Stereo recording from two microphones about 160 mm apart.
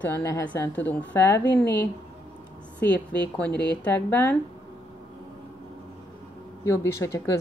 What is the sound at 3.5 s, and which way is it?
Speech, 90° left.